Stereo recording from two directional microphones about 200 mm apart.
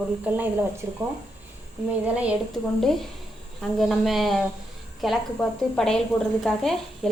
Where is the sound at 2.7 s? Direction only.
Centre (ahead or behind).